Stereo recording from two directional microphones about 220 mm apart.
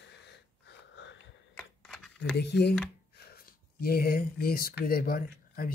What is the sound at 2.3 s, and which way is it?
Speech, 50° left (ahead or behind).